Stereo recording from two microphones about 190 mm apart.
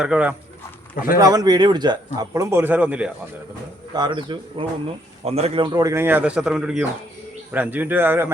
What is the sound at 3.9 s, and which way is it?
Speech, 25° right (ahead or behind).